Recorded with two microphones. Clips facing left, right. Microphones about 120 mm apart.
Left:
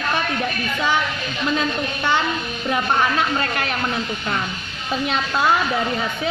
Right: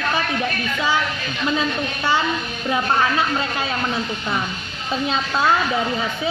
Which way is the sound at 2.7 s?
15° right (ahead or behind).